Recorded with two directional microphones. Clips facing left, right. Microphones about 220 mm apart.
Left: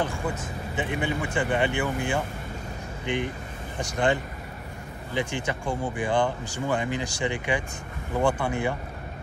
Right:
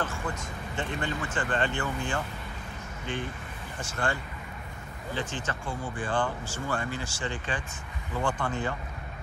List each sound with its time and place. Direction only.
0.7 s speech: 10° left (ahead or behind)